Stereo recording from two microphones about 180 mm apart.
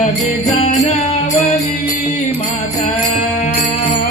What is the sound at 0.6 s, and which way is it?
Music, 35° left (ahead or behind).